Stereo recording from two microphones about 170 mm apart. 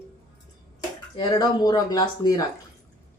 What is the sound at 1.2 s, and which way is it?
Speech, 25° left (ahead or behind).